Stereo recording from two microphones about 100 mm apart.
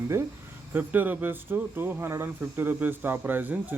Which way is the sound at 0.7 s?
20° right (ahead or behind).